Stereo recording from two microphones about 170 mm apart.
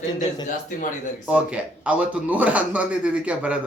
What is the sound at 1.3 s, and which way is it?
A man's voice, 5° right (ahead or behind).